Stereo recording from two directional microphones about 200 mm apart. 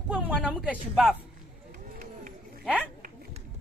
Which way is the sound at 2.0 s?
45° right (ahead or behind).